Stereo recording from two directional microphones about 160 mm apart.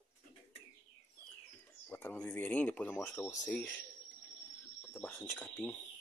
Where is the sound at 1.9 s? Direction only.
10° left (ahead or behind).